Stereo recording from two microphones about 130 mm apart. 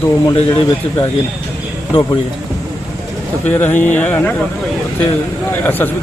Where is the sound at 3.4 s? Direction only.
15° left (ahead or behind).